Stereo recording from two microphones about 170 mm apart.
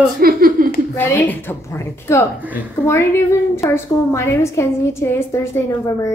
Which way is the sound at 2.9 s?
15° left (ahead or behind).